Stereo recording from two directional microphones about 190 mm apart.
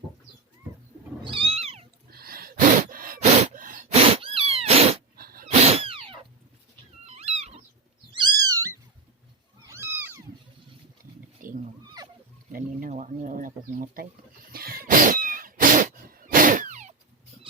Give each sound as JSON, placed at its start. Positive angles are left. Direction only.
{"t": 1.2, "sound": "cat", "side_deg": -30}
{"t": 2.0, "sound": "gasp", "side_deg": -55}
{"t": 4.1, "sound": "cat", "side_deg": -30}
{"t": 5.1, "sound": "wild animals", "side_deg": -50}
{"t": 5.6, "sound": "cat", "side_deg": -30}
{"t": 7.0, "sound": "dog", "side_deg": -35}
{"t": 8.1, "sound": "cat", "side_deg": -20}
{"t": 11.4, "sound": "wild animals", "side_deg": -45}
{"t": 12.5, "sound": "speech", "side_deg": -45}
{"t": 14.5, "sound": "cat", "side_deg": -50}